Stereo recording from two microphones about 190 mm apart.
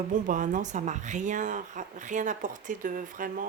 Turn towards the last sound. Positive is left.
turn(degrees=-45)  # may be behind; listen again after turning